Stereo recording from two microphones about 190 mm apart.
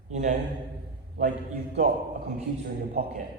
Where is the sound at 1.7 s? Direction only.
40° right (ahead or behind).